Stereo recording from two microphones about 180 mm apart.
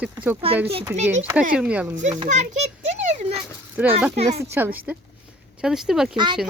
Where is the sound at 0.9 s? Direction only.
40° right (ahead or behind).